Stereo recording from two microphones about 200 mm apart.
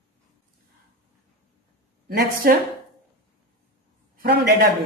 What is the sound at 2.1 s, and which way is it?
Speech, 50° right (ahead or behind).